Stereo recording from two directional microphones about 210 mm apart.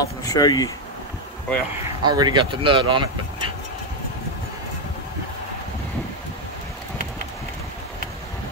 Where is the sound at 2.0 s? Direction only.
20° right (ahead or behind).